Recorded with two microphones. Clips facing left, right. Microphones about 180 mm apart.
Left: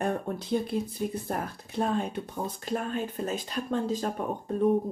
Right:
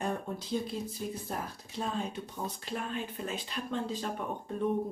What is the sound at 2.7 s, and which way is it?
Speech, 45° left (ahead or behind).